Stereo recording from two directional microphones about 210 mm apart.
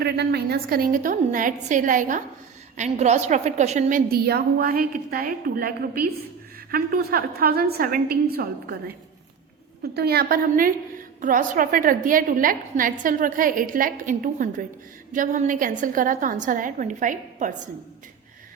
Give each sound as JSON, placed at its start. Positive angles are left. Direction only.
{"t": 0.0, "sound": "a woman's voice", "side_deg": -50}
{"t": 9.9, "sound": "a woman's voice", "side_deg": -50}